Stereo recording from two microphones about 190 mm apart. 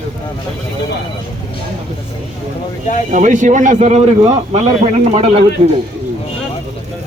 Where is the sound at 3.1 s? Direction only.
40° right (ahead or behind).